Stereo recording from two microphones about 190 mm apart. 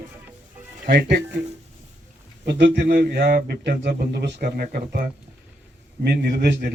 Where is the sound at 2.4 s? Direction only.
70° right (ahead or behind).